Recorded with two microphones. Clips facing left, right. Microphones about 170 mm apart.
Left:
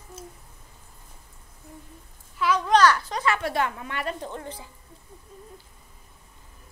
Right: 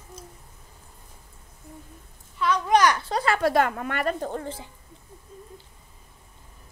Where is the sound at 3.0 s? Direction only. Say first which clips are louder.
Right 3 dB; 35° right (ahead or behind).